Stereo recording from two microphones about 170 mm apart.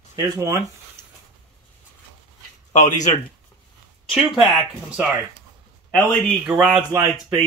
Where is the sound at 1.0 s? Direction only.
5° left (ahead or behind).